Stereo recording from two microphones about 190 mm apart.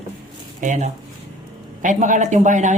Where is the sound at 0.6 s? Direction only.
40° right (ahead or behind).